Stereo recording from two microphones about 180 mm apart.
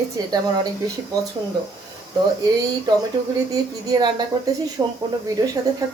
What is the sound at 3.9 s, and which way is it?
Speech, 20° right (ahead or behind).